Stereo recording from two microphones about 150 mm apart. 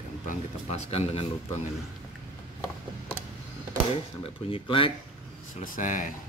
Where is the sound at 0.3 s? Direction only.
45° left (ahead or behind).